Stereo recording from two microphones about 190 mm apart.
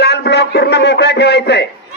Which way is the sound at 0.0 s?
60° left (ahead or behind).